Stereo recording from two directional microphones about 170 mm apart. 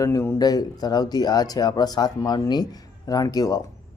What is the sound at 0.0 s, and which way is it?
Speech, 20° left (ahead or behind).